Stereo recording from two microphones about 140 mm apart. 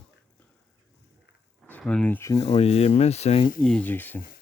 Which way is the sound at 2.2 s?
20° left (ahead or behind).